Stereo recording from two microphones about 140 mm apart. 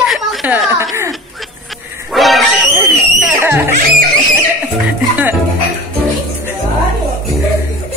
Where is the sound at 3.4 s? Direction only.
15° right (ahead or behind).